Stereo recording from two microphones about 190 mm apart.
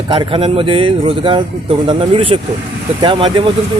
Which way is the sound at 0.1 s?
25° right (ahead or behind).